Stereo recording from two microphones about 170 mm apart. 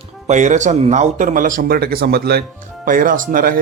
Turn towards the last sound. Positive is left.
turn(degrees=-55)  # may be behind; listen again after turning